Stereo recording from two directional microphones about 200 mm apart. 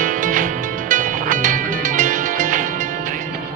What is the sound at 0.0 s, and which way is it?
Music, 40° right (ahead or behind).